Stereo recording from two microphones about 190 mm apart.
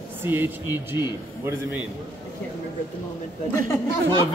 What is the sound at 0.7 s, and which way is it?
Speech, 20° left (ahead or behind).